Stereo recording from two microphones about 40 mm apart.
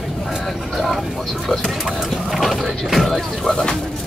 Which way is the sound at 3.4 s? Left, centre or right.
Centre.